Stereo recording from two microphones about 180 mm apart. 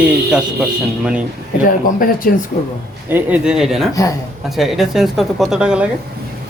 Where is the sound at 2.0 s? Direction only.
50° left (ahead or behind).